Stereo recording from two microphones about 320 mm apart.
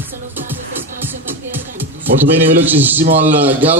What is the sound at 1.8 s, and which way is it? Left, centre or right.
A man's voice, centre.